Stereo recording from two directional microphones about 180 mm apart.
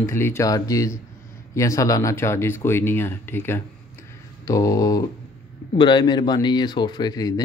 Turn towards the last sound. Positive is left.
turn(degrees=20)  # may be behind; listen again after turning